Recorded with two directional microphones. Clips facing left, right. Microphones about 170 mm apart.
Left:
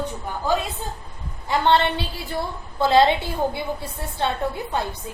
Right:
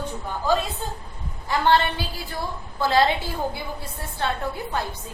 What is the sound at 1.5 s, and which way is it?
A woman's voice, 25° left (ahead or behind).